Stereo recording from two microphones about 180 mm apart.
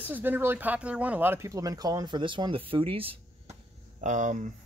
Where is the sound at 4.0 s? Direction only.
45° right (ahead or behind).